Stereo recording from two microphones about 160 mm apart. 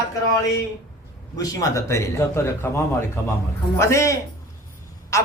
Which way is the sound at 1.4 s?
20° left (ahead or behind).